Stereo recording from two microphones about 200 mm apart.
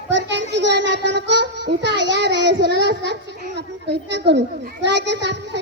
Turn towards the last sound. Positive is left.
turn(degrees=-60)  # may be behind; listen again after turning